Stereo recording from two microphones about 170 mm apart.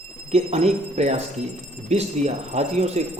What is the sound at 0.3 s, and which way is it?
A man's voice, 40° right (ahead or behind).